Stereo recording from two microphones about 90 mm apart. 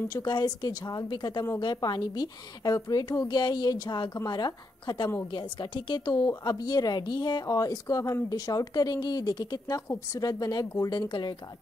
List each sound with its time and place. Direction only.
0.1 s speech: 55° left (ahead or behind)